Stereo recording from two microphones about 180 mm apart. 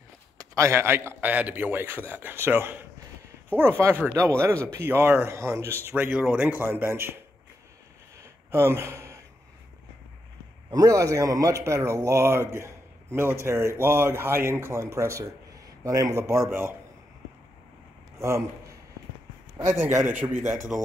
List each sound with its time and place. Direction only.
0.4 s speech: 15° right (ahead or behind)
8.2 s a sound: 15° right (ahead or behind)
10.7 s speech: 20° right (ahead or behind)
20.0 s speech: 10° right (ahead or behind)